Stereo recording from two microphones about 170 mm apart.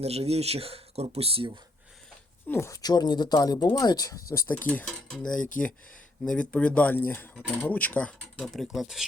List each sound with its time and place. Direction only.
0.0 s speech: 35° right (ahead or behind)
2.5 s speech: 15° left (ahead or behind); by 9.0 s centre (ahead or behind)